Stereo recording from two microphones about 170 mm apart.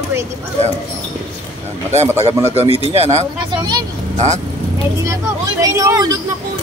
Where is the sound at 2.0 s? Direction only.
15° right (ahead or behind).